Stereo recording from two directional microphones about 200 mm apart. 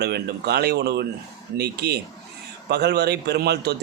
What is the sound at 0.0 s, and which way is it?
A man's voice, 55° right (ahead or behind).